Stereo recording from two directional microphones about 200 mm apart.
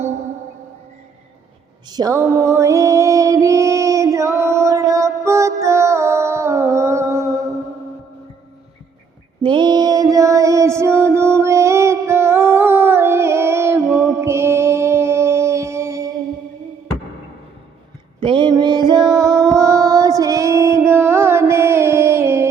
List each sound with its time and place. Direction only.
1.9 s music: 20° right (ahead or behind)
9.4 s mantra: 25° right (ahead or behind)
18.2 s mantra: 25° right (ahead or behind)
19.2 s music: 20° right (ahead or behind)